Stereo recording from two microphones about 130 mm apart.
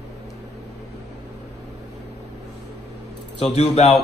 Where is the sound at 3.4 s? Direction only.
55° left (ahead or behind).